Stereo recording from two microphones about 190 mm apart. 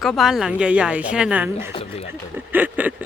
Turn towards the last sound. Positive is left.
turn(degrees=-10)  # may be behind; listen again after turning